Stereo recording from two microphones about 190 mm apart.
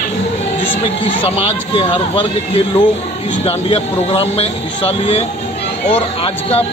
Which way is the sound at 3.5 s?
30° left (ahead or behind).